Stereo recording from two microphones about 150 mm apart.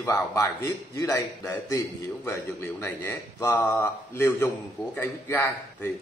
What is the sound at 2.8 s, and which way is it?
A man's voice, 20° left (ahead or behind).